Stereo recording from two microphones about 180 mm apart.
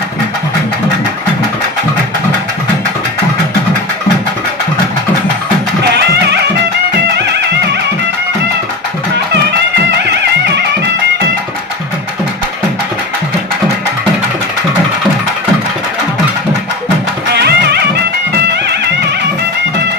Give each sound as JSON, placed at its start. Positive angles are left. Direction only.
{"t": 17.3, "sound": "music", "side_deg": -65}